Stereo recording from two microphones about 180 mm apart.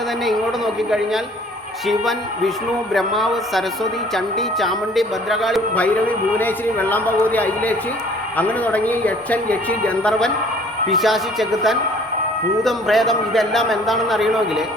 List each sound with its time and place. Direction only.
0.3 s a man's voice: centre (ahead or behind)